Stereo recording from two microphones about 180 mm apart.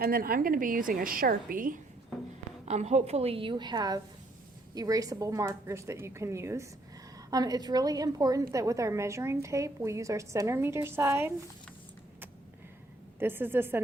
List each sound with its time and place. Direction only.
0.0 s a woman's voice: 55° right (ahead or behind)
2.6 s a woman's voice: 40° right (ahead or behind); by 11.3 s 15° right (ahead or behind)
13.1 s a woman's voice: 10° right (ahead or behind)